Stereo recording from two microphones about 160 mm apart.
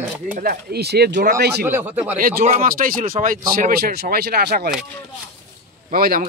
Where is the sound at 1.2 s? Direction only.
75° right (ahead or behind).